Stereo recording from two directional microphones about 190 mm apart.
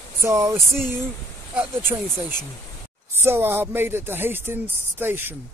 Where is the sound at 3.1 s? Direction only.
10° right (ahead or behind).